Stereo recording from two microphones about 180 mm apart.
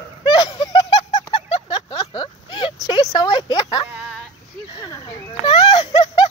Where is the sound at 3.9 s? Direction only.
5° right (ahead or behind).